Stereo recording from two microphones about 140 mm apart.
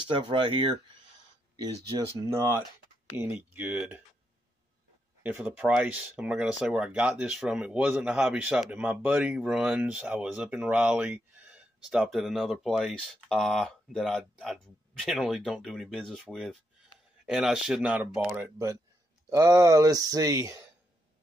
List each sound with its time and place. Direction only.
0.3 s speech: 35° right (ahead or behind); by 3.7 s 15° right (ahead or behind)
5.3 s speech: 5° right (ahead or behind)
19.2 s speech: 25° right (ahead or behind)